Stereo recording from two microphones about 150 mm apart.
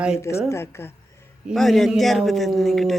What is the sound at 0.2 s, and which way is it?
Speech, 20° left (ahead or behind).